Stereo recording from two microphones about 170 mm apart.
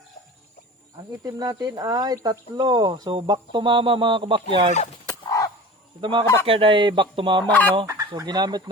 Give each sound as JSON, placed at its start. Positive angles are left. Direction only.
{"t": 1.2, "sound": "speech", "side_deg": -20}
{"t": 5.0, "sound": "a sound", "side_deg": 20}
{"t": 6.0, "sound": "speech", "side_deg": -30}
{"t": 7.4, "sound": "speech", "side_deg": 10}
{"t": 7.9, "sound": "speech", "side_deg": -20}